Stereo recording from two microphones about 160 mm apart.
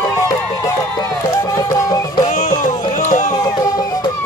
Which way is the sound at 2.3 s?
55° left (ahead or behind).